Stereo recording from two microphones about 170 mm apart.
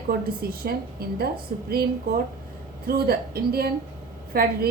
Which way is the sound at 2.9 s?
65° right (ahead or behind).